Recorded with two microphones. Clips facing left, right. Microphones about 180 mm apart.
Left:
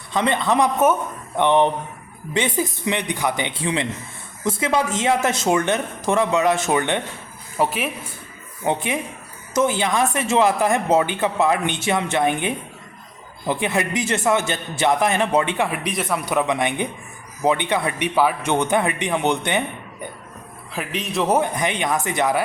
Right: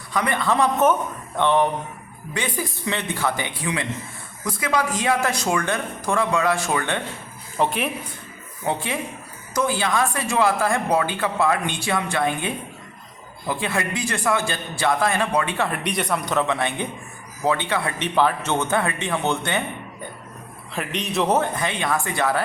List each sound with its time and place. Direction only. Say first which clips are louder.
0.1 s speech: left 3 dB; 25° left (ahead or behind)
7.6 s a man's voice: left 1 dB; 5° left (ahead or behind)
8.6 s speech: left 3 dB; 20° left (ahead or behind)
15.8 s a man's voice: even; centre (ahead or behind); by 19.6 s 20° left (ahead or behind)
20.7 s a man's voice: even; centre (ahead or behind)
21.3 s a man's voice: left 2 dB; 15° left (ahead or behind)